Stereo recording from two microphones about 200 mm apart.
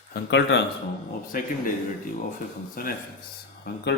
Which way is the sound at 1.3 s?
45° left (ahead or behind).